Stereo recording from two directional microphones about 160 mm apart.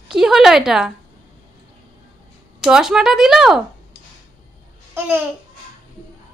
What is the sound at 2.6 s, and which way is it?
A woman's voice, 5° right (ahead or behind).